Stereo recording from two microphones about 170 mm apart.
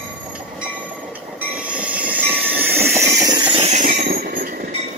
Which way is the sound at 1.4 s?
5° right (ahead or behind).